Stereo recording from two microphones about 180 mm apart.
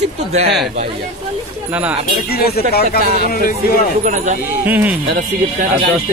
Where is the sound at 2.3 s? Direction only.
60° left (ahead or behind).